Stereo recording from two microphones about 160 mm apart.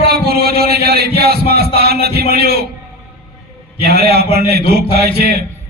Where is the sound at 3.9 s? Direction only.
80° right.